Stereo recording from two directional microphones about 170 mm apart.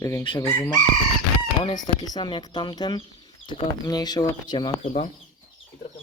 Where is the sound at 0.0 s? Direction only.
15° left (ahead or behind).